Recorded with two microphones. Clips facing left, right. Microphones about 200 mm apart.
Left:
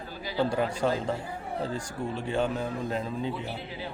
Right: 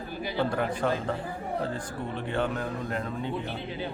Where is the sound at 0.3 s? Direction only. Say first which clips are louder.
Left 2 dB; 10° left (ahead or behind).